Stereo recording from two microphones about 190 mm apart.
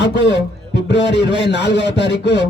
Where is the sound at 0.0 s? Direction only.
65° left (ahead or behind).